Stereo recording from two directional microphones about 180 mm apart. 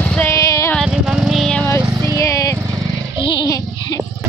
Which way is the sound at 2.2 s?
15° left (ahead or behind).